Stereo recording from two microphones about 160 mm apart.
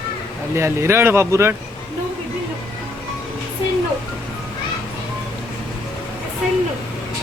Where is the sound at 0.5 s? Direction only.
15° right (ahead or behind).